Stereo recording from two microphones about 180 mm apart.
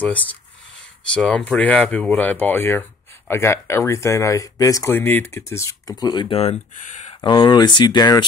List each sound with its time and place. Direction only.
0.0 s speech: 10° left (ahead or behind); by 7.2 s 40° left (ahead or behind)
7.2 s speech: 25° left (ahead or behind)